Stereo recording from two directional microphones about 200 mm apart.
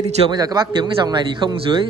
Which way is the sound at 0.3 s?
20° right (ahead or behind).